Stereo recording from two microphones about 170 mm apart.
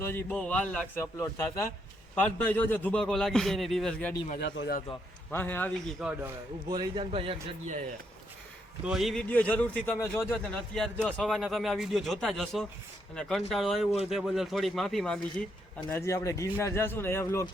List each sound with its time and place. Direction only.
0.0 s a man's voice: 15° left (ahead or behind)
2.1 s speech: 10° left (ahead or behind)
4.4 s speech: 80° left
5.3 s a man's voice: 10° left (ahead or behind)
6.0 s speech: 5° right (ahead or behind)
6.7 s a man's voice: 25° right (ahead or behind)
8.8 s speech: centre (ahead or behind)
15.9 s a man's voice: 15° left (ahead or behind)